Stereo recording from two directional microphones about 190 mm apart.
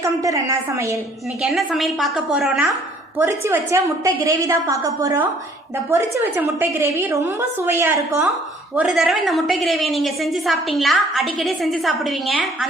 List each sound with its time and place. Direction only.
0.2 s a woman's voice: 15° right (ahead or behind)
1.4 s a woman's voice: centre (ahead or behind)
3.2 s a woman's voice: 10° right (ahead or behind)
8.7 s a woman's voice: 5° right (ahead or behind)